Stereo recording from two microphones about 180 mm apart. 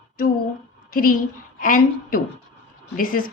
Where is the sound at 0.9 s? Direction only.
50° left (ahead or behind).